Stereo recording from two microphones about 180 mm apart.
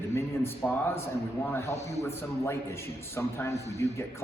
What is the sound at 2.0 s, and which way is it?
A man's voice, 15° left (ahead or behind).